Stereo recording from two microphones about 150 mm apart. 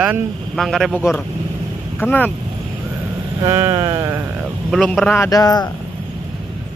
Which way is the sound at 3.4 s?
25° right (ahead or behind).